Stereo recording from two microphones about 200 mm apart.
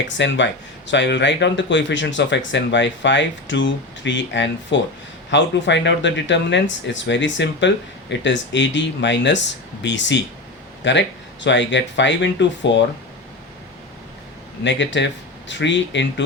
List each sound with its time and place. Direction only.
0.2 s speech: 65° left (ahead or behind)
14.6 s speech: 60° left (ahead or behind)